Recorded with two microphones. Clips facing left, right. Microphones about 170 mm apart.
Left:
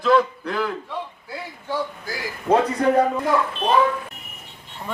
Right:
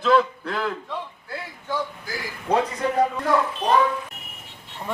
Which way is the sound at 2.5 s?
45° left (ahead or behind).